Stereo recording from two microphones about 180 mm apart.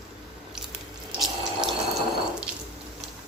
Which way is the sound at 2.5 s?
5° right (ahead or behind).